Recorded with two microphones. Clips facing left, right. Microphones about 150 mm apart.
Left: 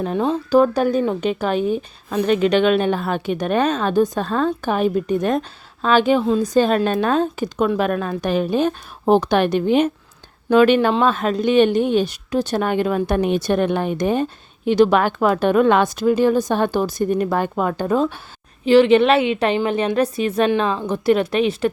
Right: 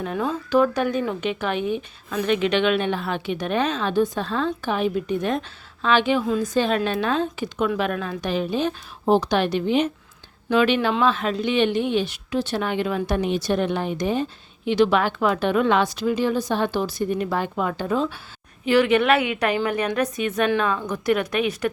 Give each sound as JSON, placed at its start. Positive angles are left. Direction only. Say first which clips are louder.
{"t": 0.0, "sound": "speech", "louder": "left 5 dB", "side_deg": 30}
{"t": 18.6, "sound": "a woman's voice", "louder": "left 6 dB", "side_deg": 30}